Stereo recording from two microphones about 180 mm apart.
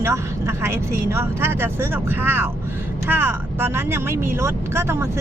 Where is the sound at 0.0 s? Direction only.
15° right (ahead or behind).